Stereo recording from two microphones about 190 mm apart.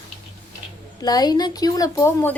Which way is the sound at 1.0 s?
20° left (ahead or behind).